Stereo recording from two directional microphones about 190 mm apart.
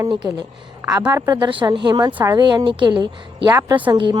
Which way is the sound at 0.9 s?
10° right (ahead or behind).